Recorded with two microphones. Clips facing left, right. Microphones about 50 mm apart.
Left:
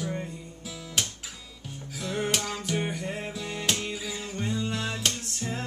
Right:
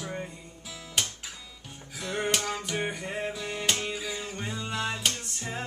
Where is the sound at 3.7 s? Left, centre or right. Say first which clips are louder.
Even; centre.